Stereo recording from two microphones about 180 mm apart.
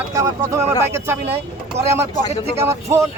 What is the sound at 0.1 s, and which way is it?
Speech, 15° right (ahead or behind).